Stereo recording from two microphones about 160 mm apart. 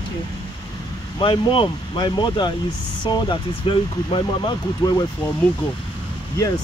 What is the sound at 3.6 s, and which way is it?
Speech, 30° left (ahead or behind).